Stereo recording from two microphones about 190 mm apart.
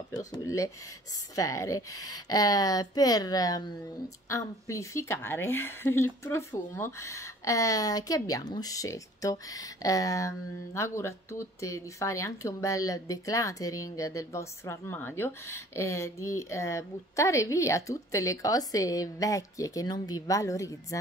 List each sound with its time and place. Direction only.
0.3 s speech: 15° left (ahead or behind)